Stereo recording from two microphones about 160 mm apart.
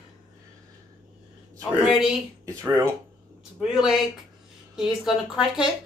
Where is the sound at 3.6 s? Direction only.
5° right (ahead or behind).